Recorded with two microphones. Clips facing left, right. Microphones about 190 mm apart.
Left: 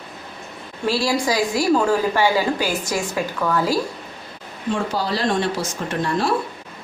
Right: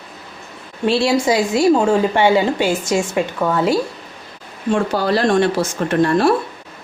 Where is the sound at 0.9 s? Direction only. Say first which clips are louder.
Right 5 dB; 25° right (ahead or behind).